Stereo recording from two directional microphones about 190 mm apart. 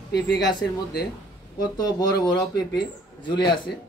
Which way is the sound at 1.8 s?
20° left (ahead or behind).